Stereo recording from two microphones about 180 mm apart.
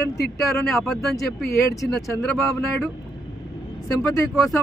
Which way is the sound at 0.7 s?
Centre (ahead or behind).